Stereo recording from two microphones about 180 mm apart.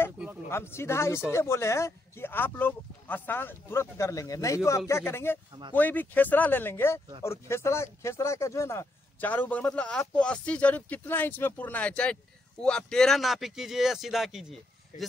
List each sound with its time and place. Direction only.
0.5 s speech: 15° left (ahead or behind)